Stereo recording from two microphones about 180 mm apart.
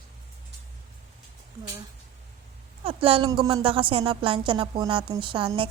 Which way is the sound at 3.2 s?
20° right (ahead or behind).